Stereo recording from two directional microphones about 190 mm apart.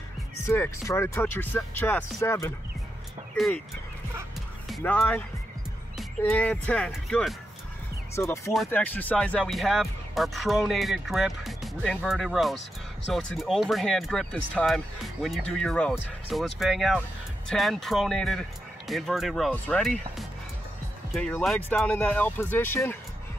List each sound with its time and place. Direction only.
0.5 s speech: 15° left (ahead or behind)
3.3 s speech: centre (ahead or behind)
4.6 s music: centre (ahead or behind)
4.9 s speech: 10° left (ahead or behind)
6.2 s speech: 10° left (ahead or behind)
8.1 s speech: 15° left (ahead or behind)